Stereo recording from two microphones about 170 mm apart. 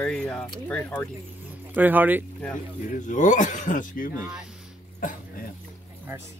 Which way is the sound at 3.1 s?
45° left (ahead or behind).